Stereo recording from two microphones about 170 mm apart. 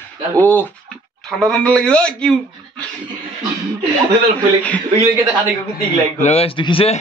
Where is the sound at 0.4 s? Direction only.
10° left (ahead or behind).